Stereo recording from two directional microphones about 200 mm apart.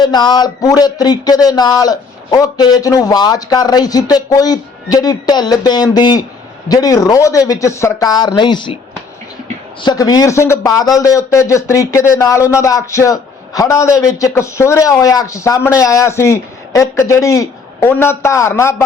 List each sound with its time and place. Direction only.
0.0 s a man's voice: 20° left (ahead or behind)
9.8 s a man's voice: 20° left (ahead or behind)